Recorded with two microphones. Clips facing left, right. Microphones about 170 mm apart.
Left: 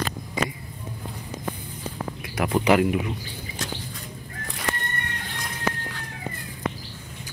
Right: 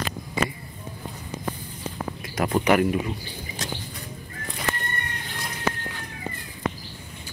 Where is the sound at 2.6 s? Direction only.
15° left (ahead or behind).